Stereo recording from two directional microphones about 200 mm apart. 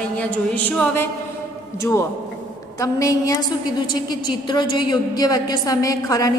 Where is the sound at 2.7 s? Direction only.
15° left (ahead or behind).